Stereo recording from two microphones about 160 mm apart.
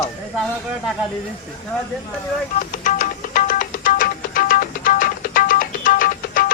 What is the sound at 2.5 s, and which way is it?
Music, 55° left (ahead or behind).